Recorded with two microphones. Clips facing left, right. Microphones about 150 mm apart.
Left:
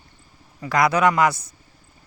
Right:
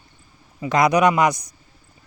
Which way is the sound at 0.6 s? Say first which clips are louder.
Right 2 dB; 20° right (ahead or behind).